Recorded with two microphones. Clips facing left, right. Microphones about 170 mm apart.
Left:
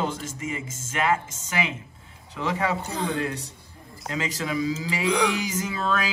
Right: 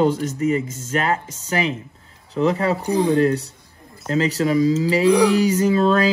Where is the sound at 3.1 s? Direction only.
35° right (ahead or behind).